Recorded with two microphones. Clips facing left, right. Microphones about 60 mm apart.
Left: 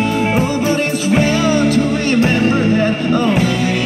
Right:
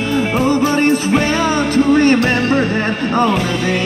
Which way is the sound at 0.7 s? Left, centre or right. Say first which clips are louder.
Right 2 dB; right.